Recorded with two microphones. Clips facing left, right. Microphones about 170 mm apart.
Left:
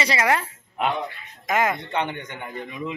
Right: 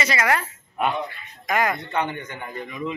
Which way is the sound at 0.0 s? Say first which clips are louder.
Left 1 dB; 25° left (ahead or behind).